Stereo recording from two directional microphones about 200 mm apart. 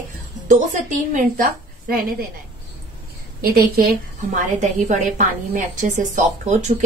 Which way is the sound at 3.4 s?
50° right (ahead or behind).